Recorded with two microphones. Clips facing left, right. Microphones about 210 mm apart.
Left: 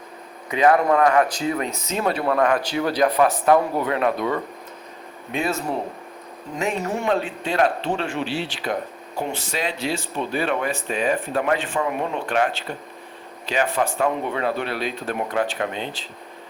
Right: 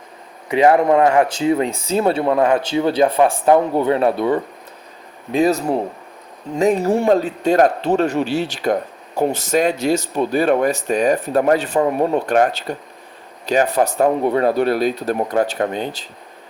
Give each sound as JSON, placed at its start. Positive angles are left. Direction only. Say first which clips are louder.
{"t": 0.5, "sound": "speech", "louder": "right 4 dB", "side_deg": -25}